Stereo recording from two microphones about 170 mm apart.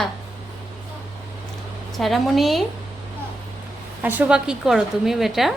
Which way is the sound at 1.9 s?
Centre (ahead or behind).